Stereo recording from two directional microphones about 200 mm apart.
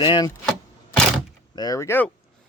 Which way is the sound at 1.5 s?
20° left (ahead or behind).